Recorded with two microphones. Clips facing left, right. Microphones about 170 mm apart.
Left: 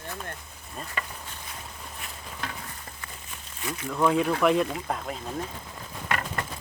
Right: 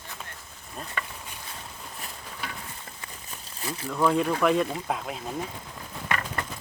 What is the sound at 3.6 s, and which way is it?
Speech, 35° right (ahead or behind).